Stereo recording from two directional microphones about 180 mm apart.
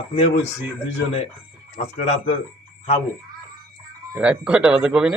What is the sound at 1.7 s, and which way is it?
Speech, 40° left (ahead or behind).